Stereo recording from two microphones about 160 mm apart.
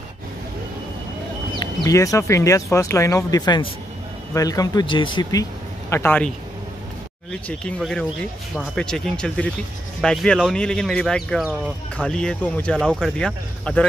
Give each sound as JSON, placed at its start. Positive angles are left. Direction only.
{"t": 1.6, "sound": "speech", "side_deg": 20}
{"t": 7.4, "sound": "speech", "side_deg": 5}